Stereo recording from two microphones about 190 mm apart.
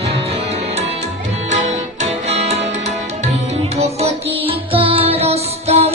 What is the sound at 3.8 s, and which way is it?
Music, 30° right (ahead or behind).